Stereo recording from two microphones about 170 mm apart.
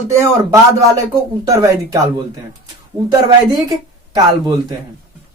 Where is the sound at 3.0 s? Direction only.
25° right (ahead or behind).